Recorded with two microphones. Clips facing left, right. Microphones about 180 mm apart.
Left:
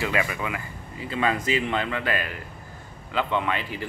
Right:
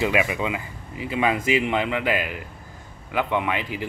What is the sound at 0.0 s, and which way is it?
Speech, 15° right (ahead or behind).